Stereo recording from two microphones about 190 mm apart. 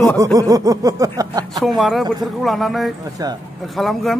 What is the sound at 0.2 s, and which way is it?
A man's voice, 20° right (ahead or behind).